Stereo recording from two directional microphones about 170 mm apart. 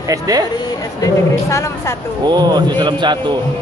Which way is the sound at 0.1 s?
20° right (ahead or behind).